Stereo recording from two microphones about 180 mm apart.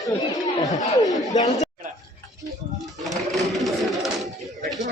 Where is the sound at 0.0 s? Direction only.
20° left (ahead or behind).